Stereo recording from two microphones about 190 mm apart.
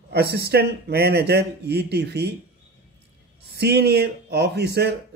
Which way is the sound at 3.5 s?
60° right (ahead or behind).